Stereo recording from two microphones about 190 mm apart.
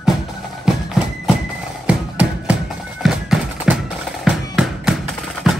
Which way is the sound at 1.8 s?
5° right (ahead or behind).